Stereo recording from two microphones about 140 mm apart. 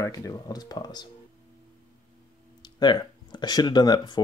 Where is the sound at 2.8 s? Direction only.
30° left (ahead or behind).